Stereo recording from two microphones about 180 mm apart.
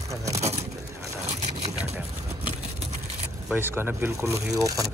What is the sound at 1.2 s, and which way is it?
Boat, 40° right (ahead or behind).